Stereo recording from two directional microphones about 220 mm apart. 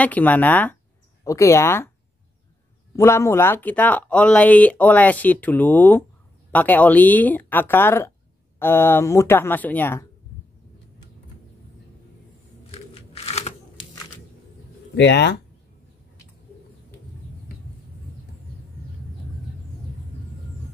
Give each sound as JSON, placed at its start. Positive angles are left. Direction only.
{"t": 0.0, "sound": "speech", "side_deg": 5}
{"t": 3.0, "sound": "speech", "side_deg": 10}
{"t": 12.7, "sound": "crunch", "side_deg": 25}
{"t": 15.0, "sound": "speech", "side_deg": 50}